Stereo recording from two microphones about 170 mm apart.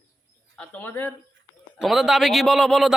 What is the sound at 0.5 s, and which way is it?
Speech, 10° left (ahead or behind).